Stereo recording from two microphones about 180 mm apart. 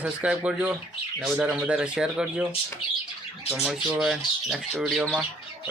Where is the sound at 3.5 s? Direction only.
5° right (ahead or behind).